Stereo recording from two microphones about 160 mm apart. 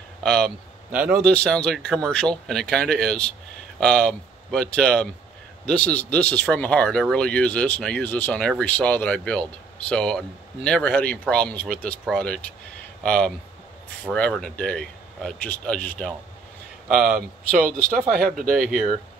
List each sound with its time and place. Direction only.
0.2 s a man's voice: 5° left (ahead or behind)
16.9 s speech: 5° right (ahead or behind)
17.6 s speech: 60° right (ahead or behind)